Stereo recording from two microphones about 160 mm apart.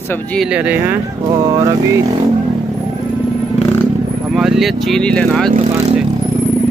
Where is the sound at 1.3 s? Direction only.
25° right (ahead or behind).